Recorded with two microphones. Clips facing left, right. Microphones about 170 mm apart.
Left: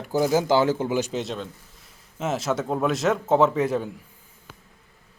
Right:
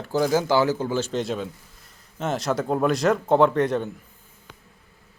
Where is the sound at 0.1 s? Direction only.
15° left (ahead or behind).